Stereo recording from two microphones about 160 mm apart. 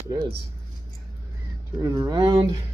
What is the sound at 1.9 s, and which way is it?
Speech, 25° right (ahead or behind).